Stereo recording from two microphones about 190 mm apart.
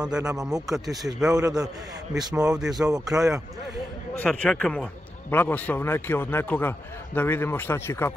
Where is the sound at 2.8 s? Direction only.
10° right (ahead or behind).